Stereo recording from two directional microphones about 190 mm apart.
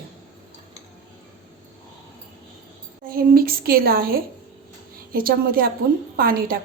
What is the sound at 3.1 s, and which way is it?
A woman's voice, 50° right (ahead or behind).